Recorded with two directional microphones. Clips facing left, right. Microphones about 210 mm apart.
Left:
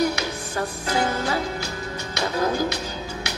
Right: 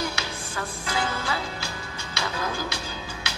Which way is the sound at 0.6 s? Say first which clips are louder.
Left 5 dB; 40° left (ahead or behind).